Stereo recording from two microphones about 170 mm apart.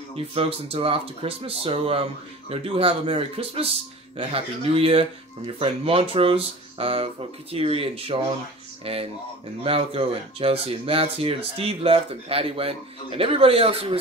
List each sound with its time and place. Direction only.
0.1 s speech: 35° right (ahead or behind)